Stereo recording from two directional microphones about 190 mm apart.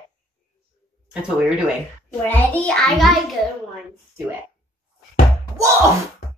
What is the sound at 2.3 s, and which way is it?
Child singing, 10° left (ahead or behind).